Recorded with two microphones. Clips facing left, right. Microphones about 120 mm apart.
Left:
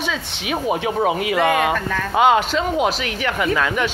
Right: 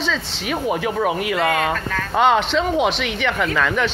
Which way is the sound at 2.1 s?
5° left (ahead or behind).